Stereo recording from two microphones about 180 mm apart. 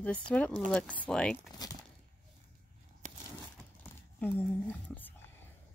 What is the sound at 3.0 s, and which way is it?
Crumpling, 45° right (ahead or behind).